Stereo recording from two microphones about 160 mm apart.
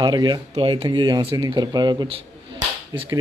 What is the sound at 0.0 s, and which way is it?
Speech, 25° right (ahead or behind).